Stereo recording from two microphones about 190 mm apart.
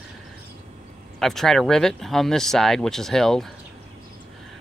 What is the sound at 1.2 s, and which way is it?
Speech, centre (ahead or behind).